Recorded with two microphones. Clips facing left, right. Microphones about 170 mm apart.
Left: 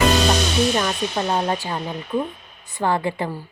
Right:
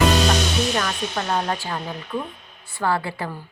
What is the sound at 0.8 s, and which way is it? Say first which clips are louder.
Speech: left 3 dB; 20° left (ahead or behind).